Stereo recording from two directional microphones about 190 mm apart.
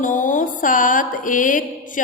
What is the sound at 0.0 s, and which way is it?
Music, 45° left (ahead or behind).